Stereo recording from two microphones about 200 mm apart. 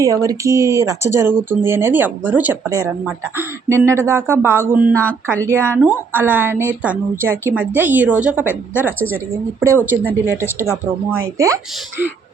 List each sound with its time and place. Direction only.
0.0 s speech: 15° right (ahead or behind)
11.1 s speech: 15° right (ahead or behind)